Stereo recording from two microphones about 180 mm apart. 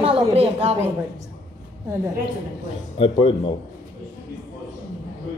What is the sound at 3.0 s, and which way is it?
Speech, 30° left (ahead or behind).